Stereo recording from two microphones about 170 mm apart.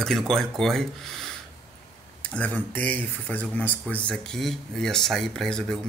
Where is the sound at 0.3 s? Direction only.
Centre (ahead or behind).